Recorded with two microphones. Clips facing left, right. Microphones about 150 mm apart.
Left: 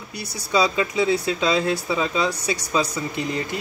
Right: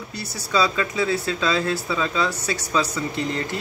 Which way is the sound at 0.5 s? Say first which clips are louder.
Left 1 dB; 15° left (ahead or behind).